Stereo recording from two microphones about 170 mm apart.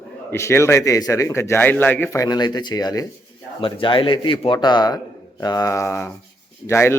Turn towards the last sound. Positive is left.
turn(degrees=15)  # may be behind; listen again after turning